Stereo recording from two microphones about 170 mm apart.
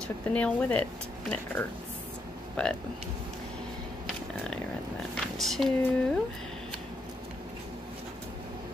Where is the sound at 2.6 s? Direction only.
5° left (ahead or behind).